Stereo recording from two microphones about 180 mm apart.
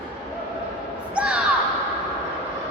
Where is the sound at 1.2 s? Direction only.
5° right (ahead or behind).